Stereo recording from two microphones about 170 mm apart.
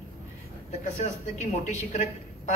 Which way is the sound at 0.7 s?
45° left (ahead or behind).